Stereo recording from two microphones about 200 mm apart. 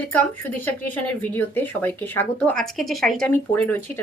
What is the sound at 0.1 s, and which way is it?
A woman's voice, 5° left (ahead or behind).